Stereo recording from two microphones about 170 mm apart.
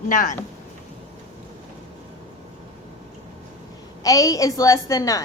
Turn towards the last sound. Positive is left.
turn(degrees=20)  # may be behind; listen again after turning